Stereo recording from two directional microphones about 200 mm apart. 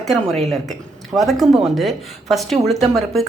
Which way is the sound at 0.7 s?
Centre (ahead or behind).